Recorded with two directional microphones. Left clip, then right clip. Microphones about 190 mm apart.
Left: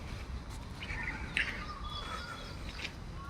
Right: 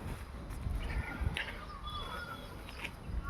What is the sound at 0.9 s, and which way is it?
Bird, 20° right (ahead or behind).